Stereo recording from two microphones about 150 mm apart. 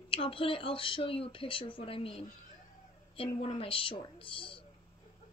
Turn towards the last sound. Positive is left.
turn(degrees=35)  # may be behind; listen again after turning